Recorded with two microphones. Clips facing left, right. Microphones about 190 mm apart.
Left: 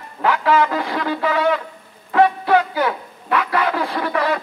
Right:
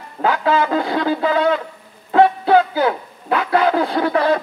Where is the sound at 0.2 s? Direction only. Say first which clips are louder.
Even; 30° right (ahead or behind).